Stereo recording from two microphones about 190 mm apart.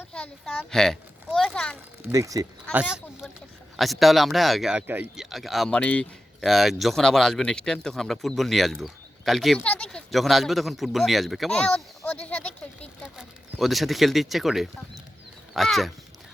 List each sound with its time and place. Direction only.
0.0 s a child's voice: 5° left (ahead or behind)
2.0 s speech: 15° right (ahead or behind)
3.8 s speech: centre (ahead or behind)
12.3 s a sound: 5° left (ahead or behind)
15.5 s speech: centre (ahead or behind)